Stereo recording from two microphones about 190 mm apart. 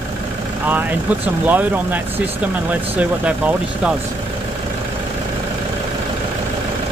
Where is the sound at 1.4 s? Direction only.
10° right (ahead or behind).